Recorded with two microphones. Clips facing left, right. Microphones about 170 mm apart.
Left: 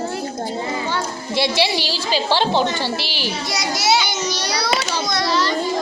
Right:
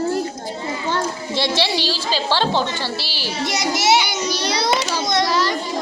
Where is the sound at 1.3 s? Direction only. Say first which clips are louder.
Left 2 dB; 10° left (ahead or behind).